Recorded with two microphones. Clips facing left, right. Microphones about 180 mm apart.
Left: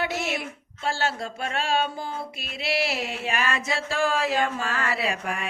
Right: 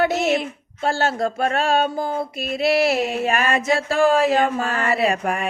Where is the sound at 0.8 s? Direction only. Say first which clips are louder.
Right 7 dB; 45° right (ahead or behind).